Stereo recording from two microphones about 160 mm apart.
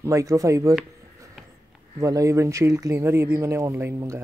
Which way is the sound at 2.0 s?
20° right (ahead or behind).